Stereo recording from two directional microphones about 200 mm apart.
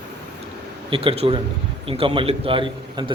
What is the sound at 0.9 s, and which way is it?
A man's voice, 25° right (ahead or behind).